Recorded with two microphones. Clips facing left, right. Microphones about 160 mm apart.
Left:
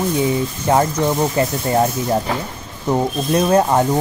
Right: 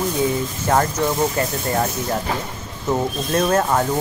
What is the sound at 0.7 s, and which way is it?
Speech, 15° left (ahead or behind).